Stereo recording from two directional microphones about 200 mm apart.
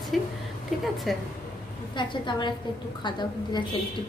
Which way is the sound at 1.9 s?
25° left (ahead or behind).